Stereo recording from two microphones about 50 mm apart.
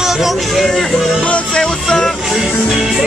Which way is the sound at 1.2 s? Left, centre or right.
Left.